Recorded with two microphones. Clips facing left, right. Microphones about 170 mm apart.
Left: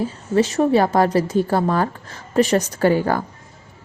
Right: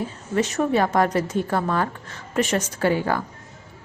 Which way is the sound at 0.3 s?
30° left (ahead or behind).